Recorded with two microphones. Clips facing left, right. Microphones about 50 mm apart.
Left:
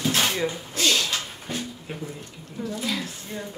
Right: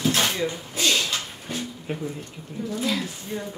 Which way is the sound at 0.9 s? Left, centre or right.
Centre.